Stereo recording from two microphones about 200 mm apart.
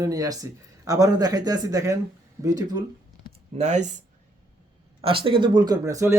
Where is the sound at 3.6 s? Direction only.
35° right (ahead or behind).